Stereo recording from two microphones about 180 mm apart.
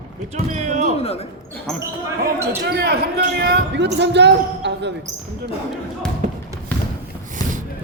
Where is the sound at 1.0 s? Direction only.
35° left (ahead or behind).